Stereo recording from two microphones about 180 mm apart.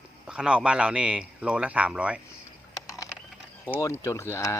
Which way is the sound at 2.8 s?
20° left (ahead or behind).